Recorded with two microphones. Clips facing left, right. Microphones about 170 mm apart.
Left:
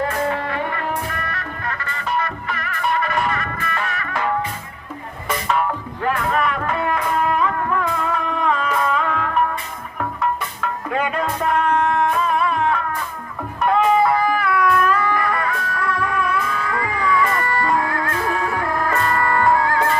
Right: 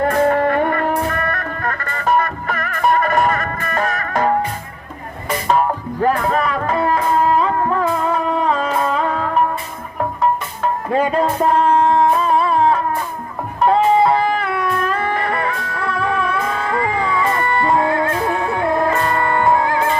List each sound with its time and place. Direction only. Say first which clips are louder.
0.0 s music: right 7 dB; 45° right (ahead or behind)
5.5 s music: right 5 dB; 35° right (ahead or behind); by 20.0 s 20° right (ahead or behind)